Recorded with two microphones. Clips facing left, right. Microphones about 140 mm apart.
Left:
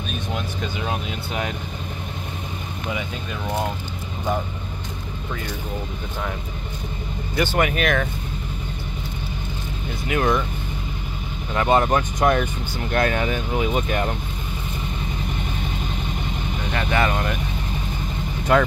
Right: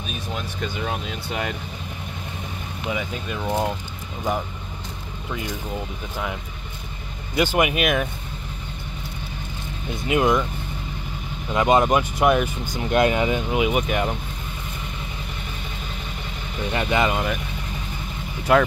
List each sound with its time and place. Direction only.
0.6 s speech: centre (ahead or behind)
7.3 s speech: 15° right (ahead or behind)
10.0 s speech: 20° right (ahead or behind)
11.5 s speech: 15° right (ahead or behind)
16.7 s speech: 15° right (ahead or behind)
18.5 s speech: 5° right (ahead or behind)